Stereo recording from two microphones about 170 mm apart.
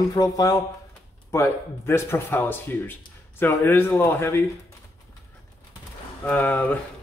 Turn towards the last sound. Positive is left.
turn(degrees=10)  # may be behind; listen again after turning